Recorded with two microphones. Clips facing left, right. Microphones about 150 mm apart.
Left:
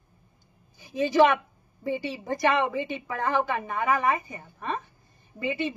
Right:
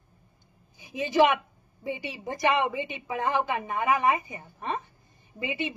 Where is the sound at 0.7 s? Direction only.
15° right (ahead or behind).